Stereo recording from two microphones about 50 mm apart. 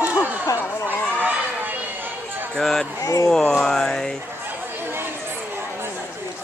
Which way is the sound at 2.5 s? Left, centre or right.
Centre.